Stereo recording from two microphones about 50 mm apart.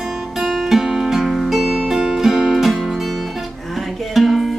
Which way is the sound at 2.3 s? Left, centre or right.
Centre.